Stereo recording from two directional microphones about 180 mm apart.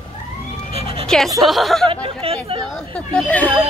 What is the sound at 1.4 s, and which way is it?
Speech, centre (ahead or behind).